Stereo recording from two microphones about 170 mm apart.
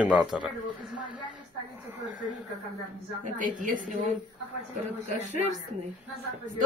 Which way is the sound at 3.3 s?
50° right (ahead or behind).